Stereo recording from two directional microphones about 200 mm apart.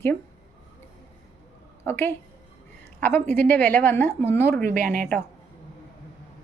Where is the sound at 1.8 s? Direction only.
10° left (ahead or behind).